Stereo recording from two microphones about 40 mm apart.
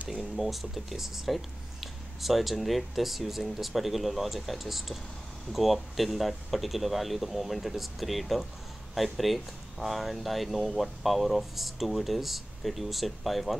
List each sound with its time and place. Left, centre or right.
0.4 s speech: centre